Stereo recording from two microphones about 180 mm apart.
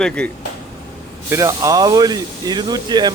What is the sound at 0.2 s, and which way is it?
Speech, 5° left (ahead or behind).